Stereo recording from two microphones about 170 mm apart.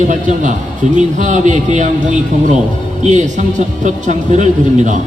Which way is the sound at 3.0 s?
45° right (ahead or behind).